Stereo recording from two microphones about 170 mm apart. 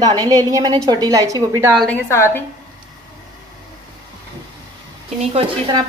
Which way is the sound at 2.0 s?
15° left (ahead or behind).